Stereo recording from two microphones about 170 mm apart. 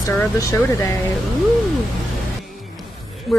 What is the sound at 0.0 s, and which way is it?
Speech, 20° left (ahead or behind).